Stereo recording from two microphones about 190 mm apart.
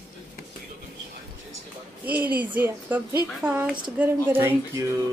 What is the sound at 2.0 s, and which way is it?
A woman's voice, 10° right (ahead or behind).